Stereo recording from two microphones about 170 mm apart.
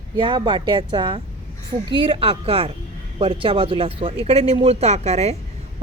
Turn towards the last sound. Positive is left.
turn(degrees=-40)  # may be behind; listen again after turning